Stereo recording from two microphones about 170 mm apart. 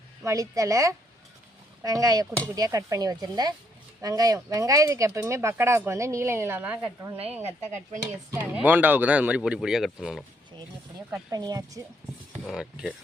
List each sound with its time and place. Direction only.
0.3 s speech: 20° right (ahead or behind); by 10.2 s centre (ahead or behind)
11.3 s speech: 20° right (ahead or behind)
12.5 s speech: centre (ahead or behind)